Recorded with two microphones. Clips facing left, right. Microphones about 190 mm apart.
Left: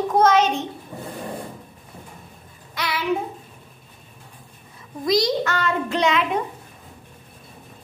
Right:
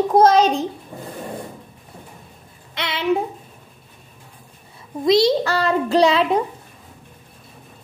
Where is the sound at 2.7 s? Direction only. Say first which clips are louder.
Even; 25° right (ahead or behind).